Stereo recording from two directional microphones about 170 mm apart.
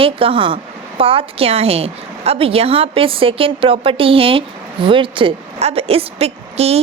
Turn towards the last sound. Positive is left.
turn(degrees=-35)  # may be behind; listen again after turning